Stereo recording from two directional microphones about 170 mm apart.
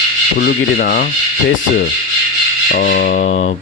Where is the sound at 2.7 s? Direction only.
55° left (ahead or behind).